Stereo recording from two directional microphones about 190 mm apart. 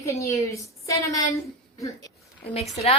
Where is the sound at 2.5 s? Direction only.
35° left (ahead or behind).